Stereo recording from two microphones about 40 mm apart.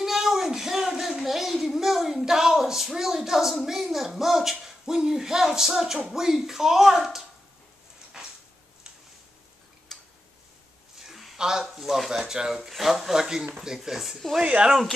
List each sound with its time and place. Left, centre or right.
0.0 s a sound: centre
6.0 s speech: centre
9.9 s tick-tock: centre
11.0 s a sound: centre
11.3 s speech: centre
11.6 s speech: centre
14.4 s speech: right